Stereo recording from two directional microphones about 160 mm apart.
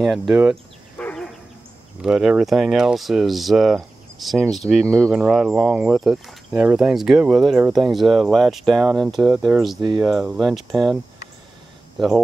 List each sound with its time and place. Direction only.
0.0 s speech: centre (ahead or behind)
0.9 s dog: 5° left (ahead or behind)
2.0 s speech: 5° right (ahead or behind)
9.8 s speech: 25° right (ahead or behind)
10.0 s speech: centre (ahead or behind)